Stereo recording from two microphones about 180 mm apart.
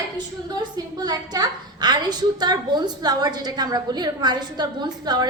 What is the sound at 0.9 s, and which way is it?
A woman's voice, 20° right (ahead or behind).